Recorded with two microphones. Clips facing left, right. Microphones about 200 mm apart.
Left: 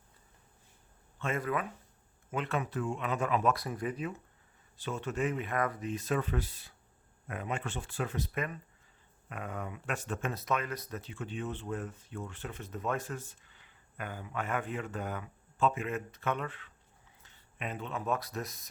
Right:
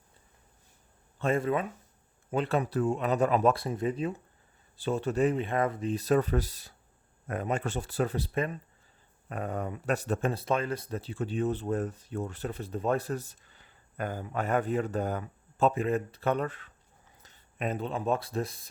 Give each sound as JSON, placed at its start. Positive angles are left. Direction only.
{"t": 1.2, "sound": "speech", "side_deg": -30}